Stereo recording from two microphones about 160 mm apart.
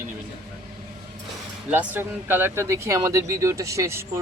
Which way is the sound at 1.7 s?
10° right (ahead or behind).